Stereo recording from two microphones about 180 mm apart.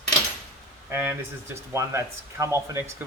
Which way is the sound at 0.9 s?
15° right (ahead or behind).